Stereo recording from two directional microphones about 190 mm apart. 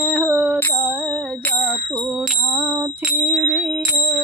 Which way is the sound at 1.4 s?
Centre (ahead or behind).